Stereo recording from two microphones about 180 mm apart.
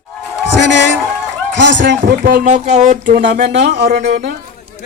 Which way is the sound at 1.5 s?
80° right.